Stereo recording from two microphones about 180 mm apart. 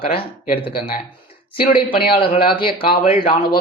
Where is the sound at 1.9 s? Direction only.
30° left (ahead or behind).